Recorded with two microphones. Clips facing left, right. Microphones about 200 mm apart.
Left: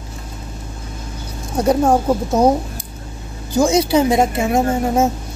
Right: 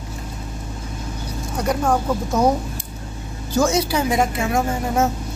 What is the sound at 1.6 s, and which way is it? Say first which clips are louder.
Speech: left 6 dB; 25° left (ahead or behind).